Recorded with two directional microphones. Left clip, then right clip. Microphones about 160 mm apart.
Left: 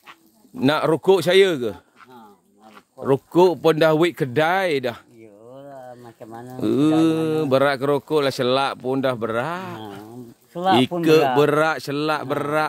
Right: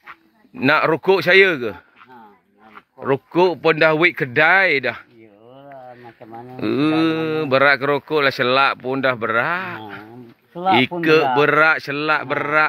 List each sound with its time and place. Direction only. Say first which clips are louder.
0.6 s speech: right 3 dB; 25° left (ahead or behind)
3.6 s speech: right 2 dB; 35° left (ahead or behind)
6.5 s speech: even; 25° left (ahead or behind)